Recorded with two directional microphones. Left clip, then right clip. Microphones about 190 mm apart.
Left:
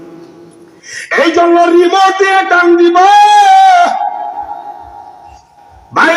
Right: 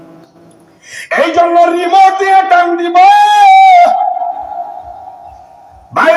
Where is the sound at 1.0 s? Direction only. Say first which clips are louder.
Left 1 dB; 40° right (ahead or behind).